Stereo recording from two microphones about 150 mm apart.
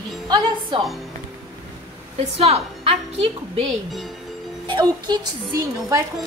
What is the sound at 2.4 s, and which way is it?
A woman's voice, 40° right (ahead or behind).